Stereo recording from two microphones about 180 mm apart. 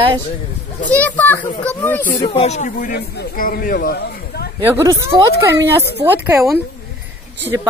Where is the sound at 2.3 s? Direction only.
35° left (ahead or behind); by 4.5 s 60° left (ahead or behind).